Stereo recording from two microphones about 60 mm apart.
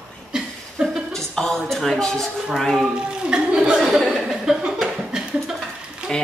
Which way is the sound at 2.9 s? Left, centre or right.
Centre.